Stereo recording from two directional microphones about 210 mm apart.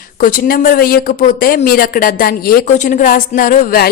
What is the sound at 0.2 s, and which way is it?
A woman's voice, 40° left (ahead or behind).